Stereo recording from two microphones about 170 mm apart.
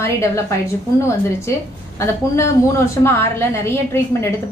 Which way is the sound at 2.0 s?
15° left (ahead or behind).